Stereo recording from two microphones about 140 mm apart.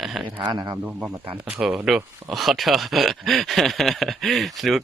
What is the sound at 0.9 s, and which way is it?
Speech, 10° right (ahead or behind).